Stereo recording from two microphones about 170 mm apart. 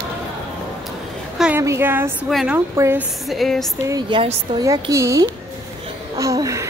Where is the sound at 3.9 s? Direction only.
30° right (ahead or behind).